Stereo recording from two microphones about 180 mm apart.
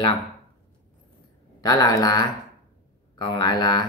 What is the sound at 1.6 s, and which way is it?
Speech, 20° left (ahead or behind).